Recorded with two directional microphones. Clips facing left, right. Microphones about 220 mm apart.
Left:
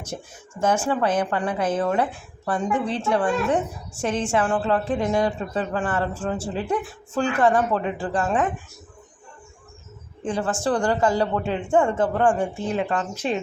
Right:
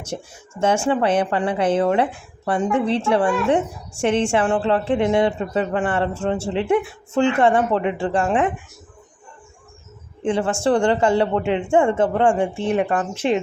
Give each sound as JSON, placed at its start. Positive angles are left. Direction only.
{"t": 0.1, "sound": "speech", "side_deg": -20}
{"t": 10.2, "sound": "speech", "side_deg": -25}